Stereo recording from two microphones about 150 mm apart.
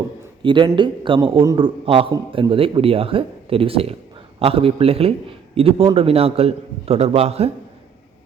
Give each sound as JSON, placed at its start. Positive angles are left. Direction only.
{"t": 0.4, "sound": "a man's voice", "side_deg": -30}